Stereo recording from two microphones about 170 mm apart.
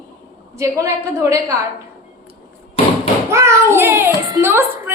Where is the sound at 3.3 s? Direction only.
15° right (ahead or behind).